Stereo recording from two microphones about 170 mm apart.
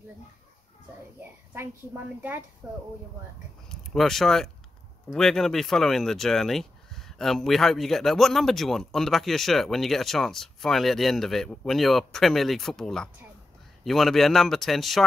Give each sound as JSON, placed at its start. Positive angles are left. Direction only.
{"t": 1.5, "sound": "a woman's voice", "side_deg": -10}
{"t": 3.6, "sound": "speech", "side_deg": 0}